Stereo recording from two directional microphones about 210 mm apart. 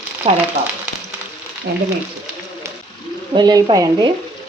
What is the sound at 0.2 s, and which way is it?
Speech, 30° right (ahead or behind).